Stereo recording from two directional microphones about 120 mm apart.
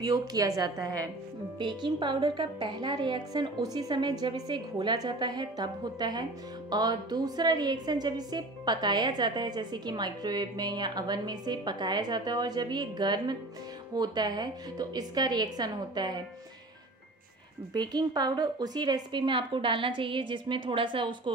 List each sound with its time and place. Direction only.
0.0 s a woman's voice: 35° right (ahead or behind)
17.7 s a woman's voice: 35° right (ahead or behind)